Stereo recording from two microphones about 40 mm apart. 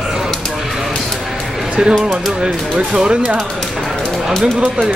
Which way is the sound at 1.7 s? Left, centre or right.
Right.